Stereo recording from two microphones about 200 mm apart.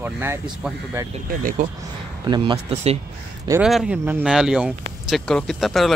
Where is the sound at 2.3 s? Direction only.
20° right (ahead or behind).